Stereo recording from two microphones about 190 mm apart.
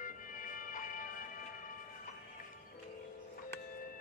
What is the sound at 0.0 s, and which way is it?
Music, 45° left (ahead or behind).